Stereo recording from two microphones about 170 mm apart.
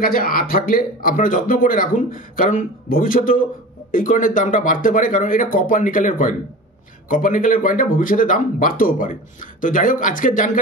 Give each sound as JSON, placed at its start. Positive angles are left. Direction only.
{"t": 0.0, "sound": "speech", "side_deg": 55}